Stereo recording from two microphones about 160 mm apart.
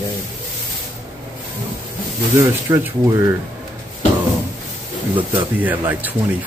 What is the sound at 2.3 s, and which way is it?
Speech, 20° right (ahead or behind).